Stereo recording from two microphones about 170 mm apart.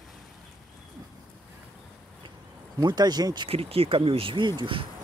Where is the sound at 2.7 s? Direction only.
25° right (ahead or behind).